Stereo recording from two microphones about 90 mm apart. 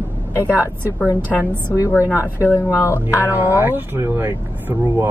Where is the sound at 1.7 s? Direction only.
35° left (ahead or behind).